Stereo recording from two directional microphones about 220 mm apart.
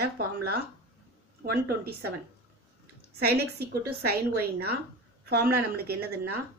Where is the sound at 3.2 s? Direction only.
45° right (ahead or behind).